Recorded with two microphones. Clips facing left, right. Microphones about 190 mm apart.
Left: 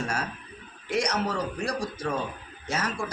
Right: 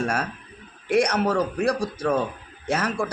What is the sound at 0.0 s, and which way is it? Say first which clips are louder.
A man's voice: right 5 dB; 55° right (ahead or behind).